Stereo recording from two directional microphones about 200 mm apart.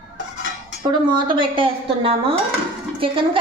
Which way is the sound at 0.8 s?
25° right (ahead or behind).